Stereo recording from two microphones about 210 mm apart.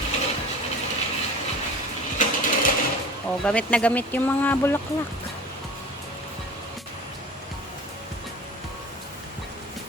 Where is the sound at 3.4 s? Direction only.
5° left (ahead or behind).